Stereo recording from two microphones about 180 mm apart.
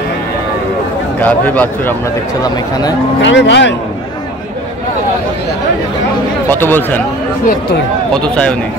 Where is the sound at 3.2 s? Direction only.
80° left.